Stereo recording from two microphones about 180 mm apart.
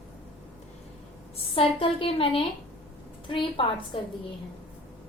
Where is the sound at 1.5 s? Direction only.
30° left (ahead or behind).